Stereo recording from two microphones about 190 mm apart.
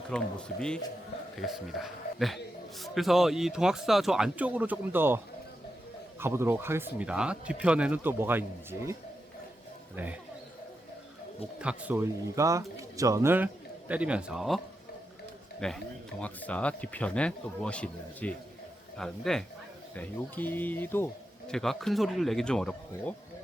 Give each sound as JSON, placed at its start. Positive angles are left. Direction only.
{"t": 0.1, "sound": "a man's voice", "side_deg": 5}
{"t": 9.9, "sound": "speech", "side_deg": -10}
{"t": 11.6, "sound": "speech", "side_deg": -5}
{"t": 15.6, "sound": "a man's voice", "side_deg": 5}